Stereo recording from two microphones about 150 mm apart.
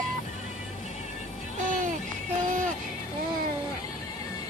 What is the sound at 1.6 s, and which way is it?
Music, 60° right (ahead or behind).